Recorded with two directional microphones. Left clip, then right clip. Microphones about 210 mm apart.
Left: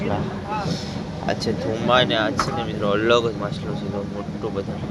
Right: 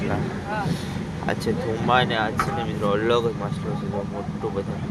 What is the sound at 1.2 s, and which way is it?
Speech, 10° right (ahead or behind).